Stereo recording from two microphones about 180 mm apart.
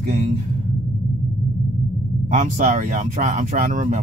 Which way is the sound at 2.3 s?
40° right (ahead or behind).